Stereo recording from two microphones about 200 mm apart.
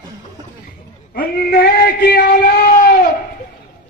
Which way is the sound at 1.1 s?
50° left (ahead or behind).